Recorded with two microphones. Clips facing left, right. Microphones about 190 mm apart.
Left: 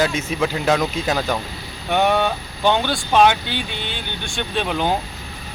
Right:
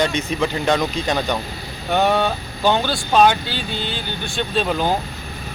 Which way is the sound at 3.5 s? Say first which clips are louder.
Right 2 dB; 60° left (ahead or behind).